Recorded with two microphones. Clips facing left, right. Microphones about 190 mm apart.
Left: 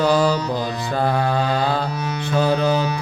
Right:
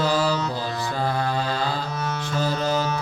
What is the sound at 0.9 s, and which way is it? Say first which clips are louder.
Mantra: left 6 dB; 60° left (ahead or behind).